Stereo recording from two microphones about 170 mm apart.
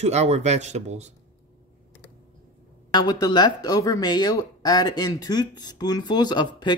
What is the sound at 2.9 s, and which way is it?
Speech, 20° left (ahead or behind).